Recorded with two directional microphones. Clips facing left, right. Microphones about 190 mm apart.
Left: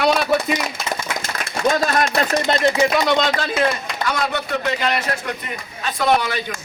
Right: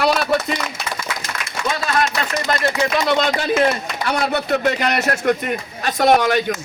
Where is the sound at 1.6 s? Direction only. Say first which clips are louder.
Left 3 dB; 45° left (ahead or behind); by 2.7 s 25° left (ahead or behind).